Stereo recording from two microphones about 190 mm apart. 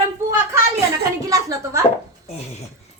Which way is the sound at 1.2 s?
15° right (ahead or behind).